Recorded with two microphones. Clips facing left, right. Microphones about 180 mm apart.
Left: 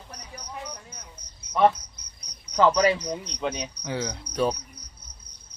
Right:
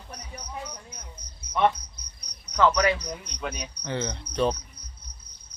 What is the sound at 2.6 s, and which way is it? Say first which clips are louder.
Cricket: left 2 dB; 30° left (ahead or behind).